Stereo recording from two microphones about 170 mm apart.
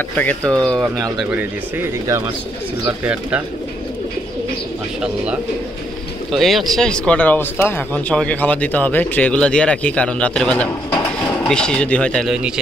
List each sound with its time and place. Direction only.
0.6 s speech: 5° left (ahead or behind)
1.2 s speech: 10° right (ahead or behind)
3.1 s speech: 10° right (ahead or behind)
5.0 s speech: 5° right (ahead or behind)